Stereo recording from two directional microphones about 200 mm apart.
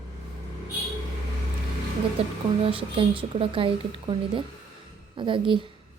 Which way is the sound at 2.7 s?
25° right (ahead or behind).